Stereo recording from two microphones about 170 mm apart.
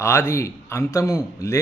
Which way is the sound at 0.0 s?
15° left (ahead or behind).